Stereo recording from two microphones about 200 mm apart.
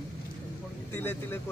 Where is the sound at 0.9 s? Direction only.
10° left (ahead or behind).